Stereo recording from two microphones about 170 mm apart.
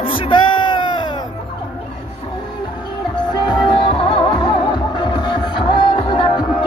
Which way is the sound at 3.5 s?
30° left (ahead or behind).